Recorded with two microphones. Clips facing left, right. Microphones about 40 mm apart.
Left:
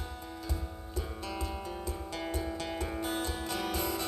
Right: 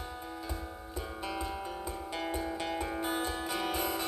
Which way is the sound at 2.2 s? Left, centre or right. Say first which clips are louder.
Right 1 dB; centre.